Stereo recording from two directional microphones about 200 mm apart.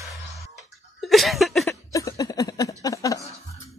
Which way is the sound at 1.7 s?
15° left (ahead or behind).